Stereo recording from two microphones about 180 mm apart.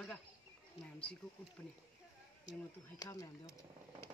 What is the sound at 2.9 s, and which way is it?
Speech, 20° left (ahead or behind).